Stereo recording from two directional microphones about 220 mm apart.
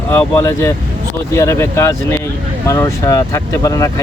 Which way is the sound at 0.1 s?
10° left (ahead or behind).